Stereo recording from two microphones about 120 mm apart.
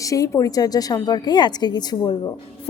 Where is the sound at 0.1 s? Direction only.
30° left (ahead or behind).